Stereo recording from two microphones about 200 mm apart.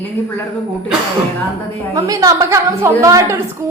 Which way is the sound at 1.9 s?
15° right (ahead or behind).